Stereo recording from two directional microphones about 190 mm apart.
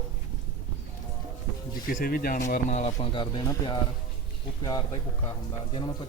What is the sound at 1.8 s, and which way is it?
Speech, 50° left (ahead or behind).